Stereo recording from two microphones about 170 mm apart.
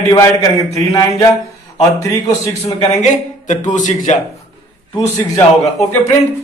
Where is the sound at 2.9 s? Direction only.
45° left (ahead or behind).